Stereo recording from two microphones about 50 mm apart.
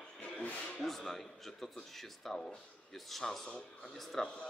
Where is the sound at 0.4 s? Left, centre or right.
Left.